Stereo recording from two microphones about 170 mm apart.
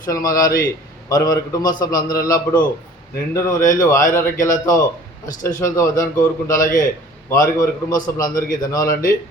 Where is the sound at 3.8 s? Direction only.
15° left (ahead or behind).